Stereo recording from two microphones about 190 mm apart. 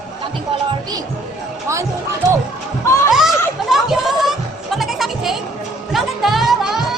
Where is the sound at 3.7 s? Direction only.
Centre (ahead or behind).